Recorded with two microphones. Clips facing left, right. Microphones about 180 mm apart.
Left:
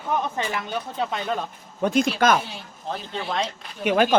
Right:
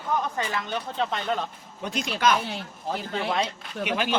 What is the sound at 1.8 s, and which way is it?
Speech, 50° left (ahead or behind).